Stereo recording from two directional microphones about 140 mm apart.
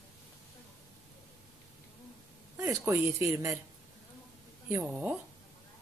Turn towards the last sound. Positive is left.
turn(degrees=-15)  # may be behind; listen again after turning